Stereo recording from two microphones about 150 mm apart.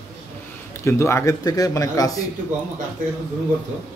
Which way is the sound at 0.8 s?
20° left (ahead or behind).